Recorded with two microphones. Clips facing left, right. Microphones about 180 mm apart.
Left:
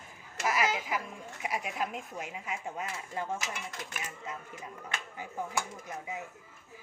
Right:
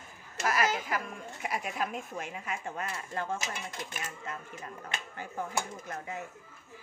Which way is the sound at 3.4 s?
25° right (ahead or behind).